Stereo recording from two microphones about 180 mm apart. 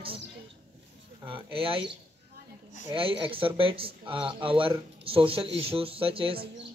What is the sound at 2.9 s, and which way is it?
Speech, 30° right (ahead or behind).